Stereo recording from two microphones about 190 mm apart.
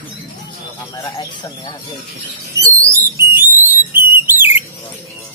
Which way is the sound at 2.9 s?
15° right (ahead or behind).